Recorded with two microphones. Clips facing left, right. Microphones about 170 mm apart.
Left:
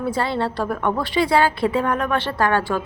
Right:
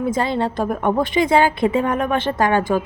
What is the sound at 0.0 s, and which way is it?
A woman's voice, 15° right (ahead or behind).